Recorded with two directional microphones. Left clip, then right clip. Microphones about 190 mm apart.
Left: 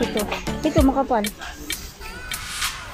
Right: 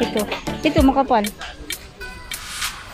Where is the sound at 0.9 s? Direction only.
15° right (ahead or behind).